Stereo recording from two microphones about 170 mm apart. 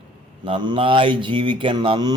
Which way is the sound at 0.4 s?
30° right (ahead or behind).